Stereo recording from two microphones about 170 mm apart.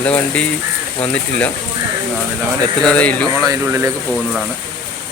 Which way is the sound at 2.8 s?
5° left (ahead or behind).